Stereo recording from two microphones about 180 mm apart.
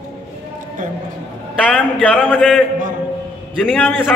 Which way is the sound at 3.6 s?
Centre (ahead or behind).